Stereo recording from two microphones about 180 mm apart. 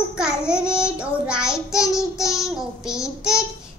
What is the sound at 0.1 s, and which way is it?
Child singing, 5° right (ahead or behind).